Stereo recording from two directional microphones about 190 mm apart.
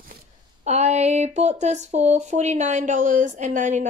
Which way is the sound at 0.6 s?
35° right (ahead or behind).